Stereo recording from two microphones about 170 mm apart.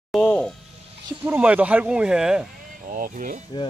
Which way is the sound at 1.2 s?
10° right (ahead or behind).